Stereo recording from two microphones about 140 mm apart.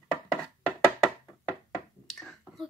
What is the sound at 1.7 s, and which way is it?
Finger snapping, centre (ahead or behind).